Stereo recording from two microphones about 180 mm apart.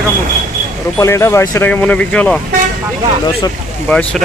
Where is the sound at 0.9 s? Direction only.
15° left (ahead or behind).